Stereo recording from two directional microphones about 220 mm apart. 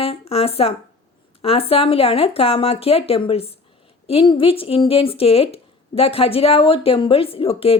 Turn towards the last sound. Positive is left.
turn(degrees=25)  # may be behind; listen again after turning